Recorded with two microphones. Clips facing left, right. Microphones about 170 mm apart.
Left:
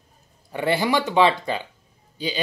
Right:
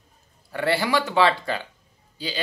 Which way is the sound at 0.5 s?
15° left (ahead or behind).